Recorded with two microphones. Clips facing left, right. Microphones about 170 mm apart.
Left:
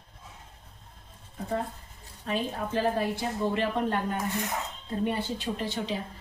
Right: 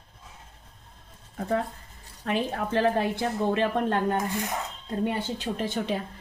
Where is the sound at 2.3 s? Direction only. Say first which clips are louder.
Right 3 dB; 70° right (ahead or behind).